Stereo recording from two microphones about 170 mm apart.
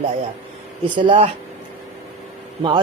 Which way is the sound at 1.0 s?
30° right (ahead or behind).